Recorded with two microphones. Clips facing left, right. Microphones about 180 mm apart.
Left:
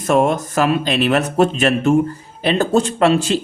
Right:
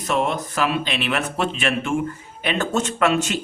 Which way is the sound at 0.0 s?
45° left (ahead or behind).